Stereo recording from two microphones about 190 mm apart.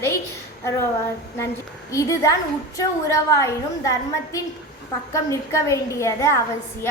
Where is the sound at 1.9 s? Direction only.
15° left (ahead or behind).